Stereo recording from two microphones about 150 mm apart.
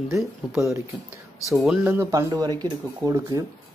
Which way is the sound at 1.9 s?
20° right (ahead or behind).